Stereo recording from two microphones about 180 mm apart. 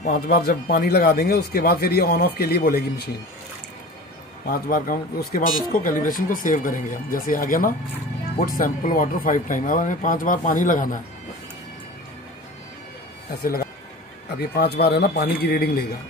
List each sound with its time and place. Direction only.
0.3 s speech: 60° left (ahead or behind)
4.5 s speech: 50° left (ahead or behind)
13.4 s speech: 55° left (ahead or behind)